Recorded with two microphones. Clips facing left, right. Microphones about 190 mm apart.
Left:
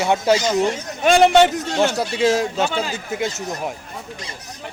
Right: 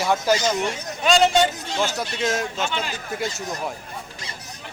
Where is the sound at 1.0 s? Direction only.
55° left (ahead or behind).